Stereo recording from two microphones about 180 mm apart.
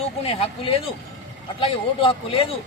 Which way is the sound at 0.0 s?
35° left (ahead or behind).